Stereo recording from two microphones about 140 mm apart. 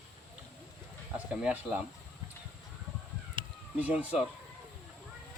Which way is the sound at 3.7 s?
10° right (ahead or behind).